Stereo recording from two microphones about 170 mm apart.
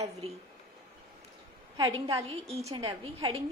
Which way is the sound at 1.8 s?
30° right (ahead or behind).